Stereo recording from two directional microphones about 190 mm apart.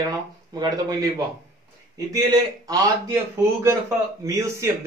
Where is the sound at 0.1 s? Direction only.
20° right (ahead or behind).